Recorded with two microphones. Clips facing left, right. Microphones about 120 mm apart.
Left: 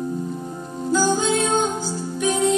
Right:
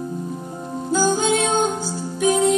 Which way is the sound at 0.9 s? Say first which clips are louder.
Right 1 dB; 30° right (ahead or behind).